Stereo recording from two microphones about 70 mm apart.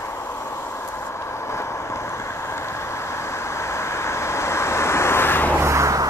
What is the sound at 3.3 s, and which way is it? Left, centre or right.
Vehicle, left.